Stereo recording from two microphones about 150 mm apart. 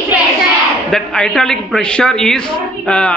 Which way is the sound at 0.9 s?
5° left (ahead or behind).